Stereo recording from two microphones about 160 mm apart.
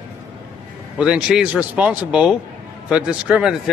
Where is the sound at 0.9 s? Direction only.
5° right (ahead or behind).